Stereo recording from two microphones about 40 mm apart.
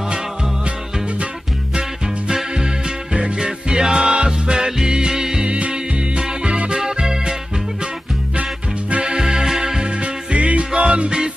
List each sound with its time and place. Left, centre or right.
2.5 s music: centre
5.5 s music: right
6.7 s music: centre
9.0 s music: centre
10.3 s music: right